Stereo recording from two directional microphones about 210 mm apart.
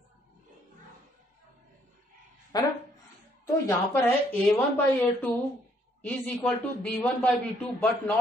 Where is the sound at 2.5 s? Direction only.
20° left (ahead or behind).